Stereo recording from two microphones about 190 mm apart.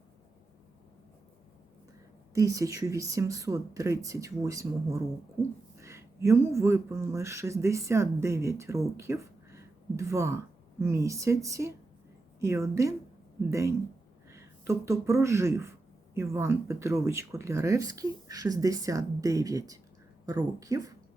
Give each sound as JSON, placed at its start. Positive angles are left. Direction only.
{"t": 2.3, "sound": "speech", "side_deg": -15}